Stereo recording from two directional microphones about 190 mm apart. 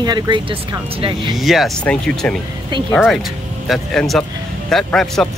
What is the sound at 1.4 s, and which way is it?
Speech, centre (ahead or behind).